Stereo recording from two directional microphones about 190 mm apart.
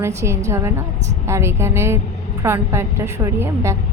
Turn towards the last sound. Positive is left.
turn(degrees=-15)  # may be behind; listen again after turning